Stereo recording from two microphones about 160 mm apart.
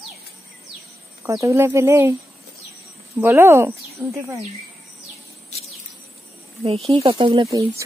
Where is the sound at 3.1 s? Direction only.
15° right (ahead or behind).